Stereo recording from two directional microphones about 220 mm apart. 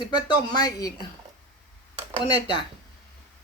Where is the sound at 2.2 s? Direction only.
20° left (ahead or behind).